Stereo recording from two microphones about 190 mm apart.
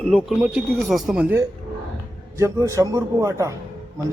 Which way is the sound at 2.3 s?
15° right (ahead or behind).